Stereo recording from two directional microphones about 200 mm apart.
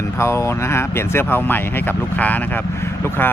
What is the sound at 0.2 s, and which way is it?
Speech, 15° left (ahead or behind).